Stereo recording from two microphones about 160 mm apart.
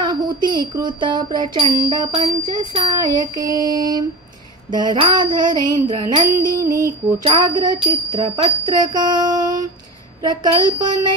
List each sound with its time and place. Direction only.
0.0 s music: 30° right (ahead or behind)